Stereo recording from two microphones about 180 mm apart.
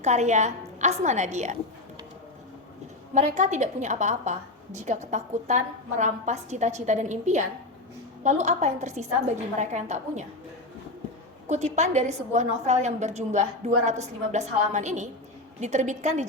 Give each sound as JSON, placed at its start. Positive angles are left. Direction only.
{"t": 0.0, "sound": "a woman's voice", "side_deg": -40}
{"t": 3.2, "sound": "a woman's voice", "side_deg": -40}
{"t": 11.4, "sound": "a woman's voice", "side_deg": -40}